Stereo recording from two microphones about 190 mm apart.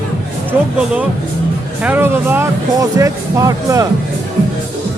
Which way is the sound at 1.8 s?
10° right (ahead or behind).